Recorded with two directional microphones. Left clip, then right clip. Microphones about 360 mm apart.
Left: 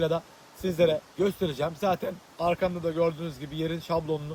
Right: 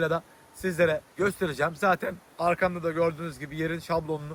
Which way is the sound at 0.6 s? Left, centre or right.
Centre.